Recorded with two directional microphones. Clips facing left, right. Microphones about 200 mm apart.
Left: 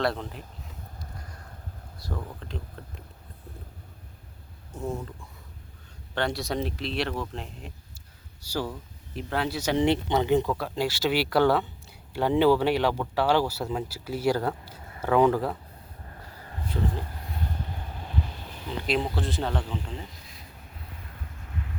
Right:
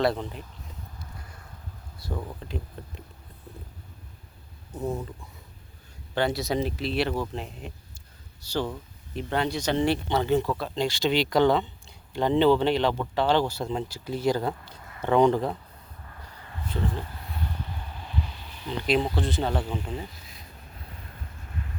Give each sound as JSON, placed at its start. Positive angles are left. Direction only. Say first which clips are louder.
{"t": 0.0, "sound": "speech", "louder": "right 3 dB", "side_deg": 0}
{"t": 1.1, "sound": "a sound", "louder": "left 1 dB", "side_deg": 45}
{"t": 2.0, "sound": "speech", "louder": "right 2 dB", "side_deg": -5}
{"t": 4.7, "sound": "speech", "louder": "right 2 dB", "side_deg": -20}
{"t": 6.1, "sound": "speech", "louder": "right 3 dB", "side_deg": 0}
{"t": 9.8, "sound": "speech", "louder": "left 4 dB", "side_deg": 20}
{"t": 16.4, "sound": "a sound", "louder": "left 1 dB", "side_deg": 40}
{"t": 17.4, "sound": "boat", "louder": "left 1 dB", "side_deg": 45}
{"t": 18.8, "sound": "speech", "louder": "right 3 dB", "side_deg": 0}